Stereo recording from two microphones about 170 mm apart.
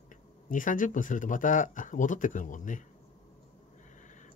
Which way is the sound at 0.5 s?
50° left (ahead or behind).